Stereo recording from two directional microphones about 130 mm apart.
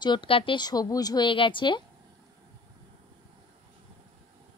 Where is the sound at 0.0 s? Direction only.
40° left (ahead or behind).